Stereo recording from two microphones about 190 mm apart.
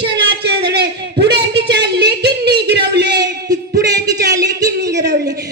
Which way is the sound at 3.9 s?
20° right (ahead or behind).